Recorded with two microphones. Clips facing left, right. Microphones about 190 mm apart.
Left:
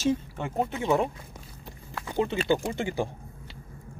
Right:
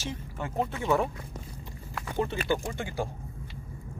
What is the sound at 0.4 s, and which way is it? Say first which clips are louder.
Speech: left 2 dB; 20° left (ahead or behind).